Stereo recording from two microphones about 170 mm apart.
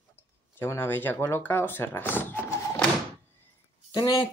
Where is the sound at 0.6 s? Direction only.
15° left (ahead or behind).